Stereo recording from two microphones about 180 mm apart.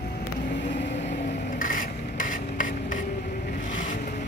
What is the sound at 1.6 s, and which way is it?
Rub, 50° left (ahead or behind).